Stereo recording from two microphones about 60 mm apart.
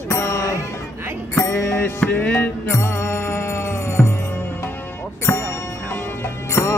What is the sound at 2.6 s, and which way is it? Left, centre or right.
Music, left.